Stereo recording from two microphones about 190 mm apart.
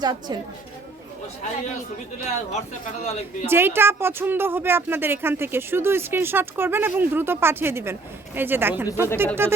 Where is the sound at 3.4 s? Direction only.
10° right (ahead or behind).